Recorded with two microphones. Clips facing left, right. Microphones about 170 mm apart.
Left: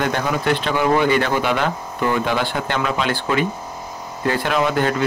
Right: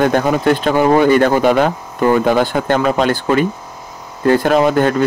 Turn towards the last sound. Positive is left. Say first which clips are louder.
# right 7 dB
turn(degrees=-45)  # may be behind; listen again after turning